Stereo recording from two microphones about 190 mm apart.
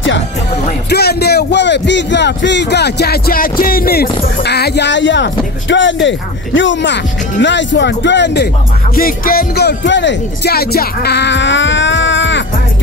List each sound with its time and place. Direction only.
0.8 s speech: 60° left (ahead or behind)
8.9 s speech: 50° left (ahead or behind); by 12.4 s 70° left (ahead or behind)